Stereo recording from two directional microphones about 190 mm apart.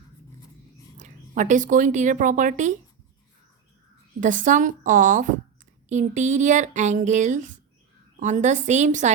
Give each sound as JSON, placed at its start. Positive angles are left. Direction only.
{"t": 0.9, "sound": "a woman's voice", "side_deg": -40}
{"t": 4.2, "sound": "a woman's voice", "side_deg": -40}